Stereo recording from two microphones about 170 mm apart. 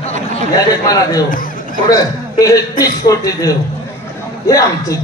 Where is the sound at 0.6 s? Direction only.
20° left (ahead or behind).